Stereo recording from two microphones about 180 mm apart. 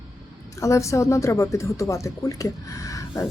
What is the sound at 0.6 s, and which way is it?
Speech, 15° left (ahead or behind).